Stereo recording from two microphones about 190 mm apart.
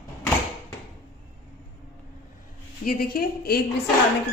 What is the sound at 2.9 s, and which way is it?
Speech, 50° left (ahead or behind).